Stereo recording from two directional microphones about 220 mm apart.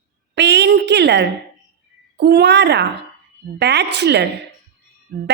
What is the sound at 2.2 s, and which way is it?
A woman's voice, 50° right (ahead or behind).